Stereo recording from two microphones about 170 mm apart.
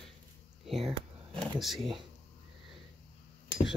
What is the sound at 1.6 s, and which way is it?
Speech, centre (ahead or behind).